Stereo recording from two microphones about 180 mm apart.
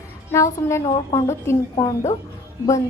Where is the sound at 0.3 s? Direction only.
15° left (ahead or behind).